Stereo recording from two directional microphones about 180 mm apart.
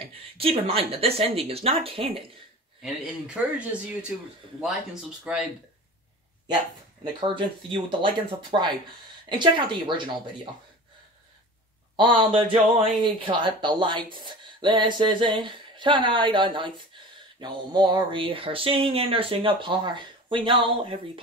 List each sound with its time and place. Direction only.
0.1 s speech: 30° right (ahead or behind)
3.5 s speech: 5° right (ahead or behind)
5.3 s speech: 5° right (ahead or behind)
7.2 s speech: 25° right (ahead or behind)
12.0 s speech: 25° right (ahead or behind)